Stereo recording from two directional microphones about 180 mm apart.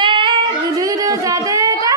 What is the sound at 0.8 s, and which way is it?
Speech, 20° right (ahead or behind).